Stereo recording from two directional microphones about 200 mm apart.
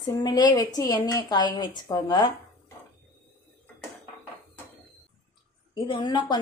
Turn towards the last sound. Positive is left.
turn(degrees=20)  # may be behind; listen again after turning